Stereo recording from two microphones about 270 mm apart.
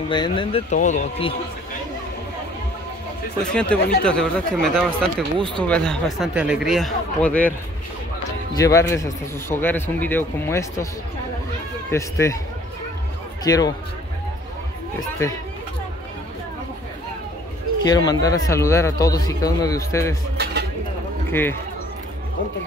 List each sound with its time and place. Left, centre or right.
0.1 s speech: centre
3.5 s speech: centre
8.5 s a man's voice: centre
11.9 s a man's voice: centre
13.4 s speech: centre
15.0 s a man's voice: centre
17.8 s a man's voice: centre
21.3 s speech: centre